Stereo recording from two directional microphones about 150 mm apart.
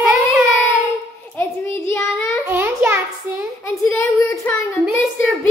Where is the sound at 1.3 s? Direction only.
15° left (ahead or behind).